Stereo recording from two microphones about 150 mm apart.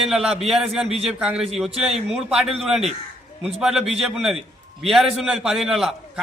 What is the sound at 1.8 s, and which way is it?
Speech, 45° right (ahead or behind).